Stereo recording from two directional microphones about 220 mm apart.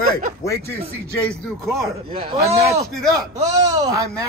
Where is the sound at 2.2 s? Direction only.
30° right (ahead or behind).